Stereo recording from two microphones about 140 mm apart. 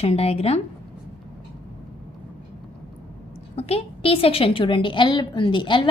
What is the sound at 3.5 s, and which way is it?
A woman's voice, 50° left (ahead or behind).